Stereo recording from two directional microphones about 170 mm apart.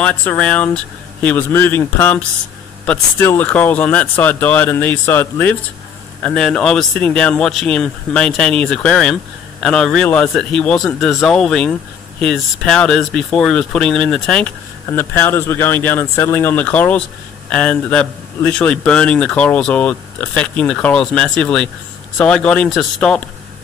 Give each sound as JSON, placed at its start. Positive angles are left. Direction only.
{"t": 0.0, "sound": "speech", "side_deg": 10}